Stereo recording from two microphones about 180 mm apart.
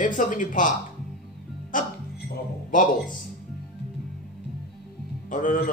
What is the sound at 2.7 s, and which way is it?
Speech, 45° left (ahead or behind).